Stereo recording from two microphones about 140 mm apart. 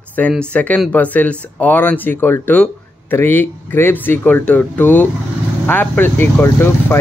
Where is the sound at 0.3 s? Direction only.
10° left (ahead or behind).